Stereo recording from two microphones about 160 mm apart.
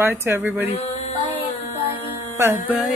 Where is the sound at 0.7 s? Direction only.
40° left (ahead or behind).